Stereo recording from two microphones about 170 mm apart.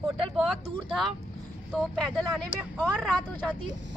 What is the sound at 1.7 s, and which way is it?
Speech, centre (ahead or behind).